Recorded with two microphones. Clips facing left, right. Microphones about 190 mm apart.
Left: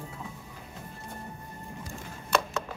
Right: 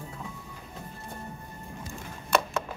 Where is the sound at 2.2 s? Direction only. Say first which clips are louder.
Right 2 dB; 60° right (ahead or behind).